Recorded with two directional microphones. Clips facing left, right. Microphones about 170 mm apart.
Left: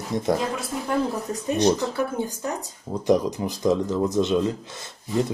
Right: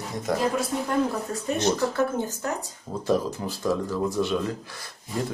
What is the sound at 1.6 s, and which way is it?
Speech, 15° left (ahead or behind).